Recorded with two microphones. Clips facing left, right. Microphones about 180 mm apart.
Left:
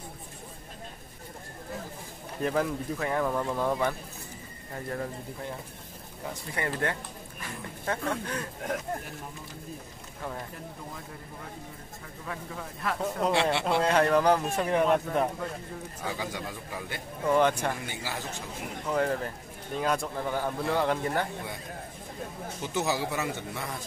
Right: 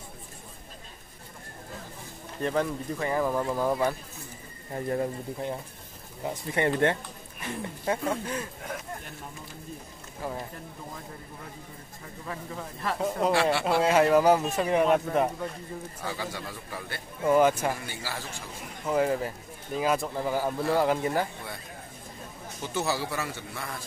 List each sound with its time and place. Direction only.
2.4 s speech: centre (ahead or behind)
4.7 s speech: 25° right (ahead or behind)
7.8 s speech: 10° right (ahead or behind)
12.3 s speech: 5° right (ahead or behind)
13.3 s a man's voice: 20° left (ahead or behind)
13.7 s speech: 5° right (ahead or behind)
16.0 s a man's voice: 15° left (ahead or behind)
17.3 s speech: 5° right (ahead or behind)
17.8 s a man's voice: 20° left (ahead or behind)
18.9 s speech: 5° right (ahead or behind)
22.8 s a man's voice: 15° left (ahead or behind)